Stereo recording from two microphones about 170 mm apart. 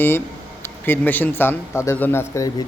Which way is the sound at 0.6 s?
10° left (ahead or behind).